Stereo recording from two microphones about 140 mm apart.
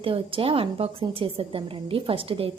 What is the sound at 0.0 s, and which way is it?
A woman's voice, 40° right (ahead or behind).